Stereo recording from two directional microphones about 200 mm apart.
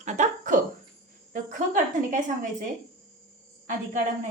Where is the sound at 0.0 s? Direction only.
35° right (ahead or behind).